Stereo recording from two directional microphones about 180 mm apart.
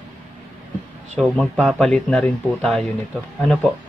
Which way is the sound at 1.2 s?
5° left (ahead or behind).